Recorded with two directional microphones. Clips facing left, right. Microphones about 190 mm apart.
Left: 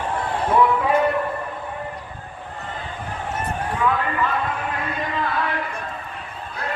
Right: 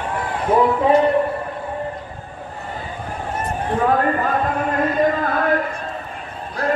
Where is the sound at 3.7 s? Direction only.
45° right (ahead or behind).